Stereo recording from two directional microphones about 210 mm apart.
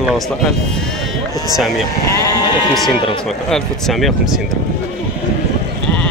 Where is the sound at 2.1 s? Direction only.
15° left (ahead or behind).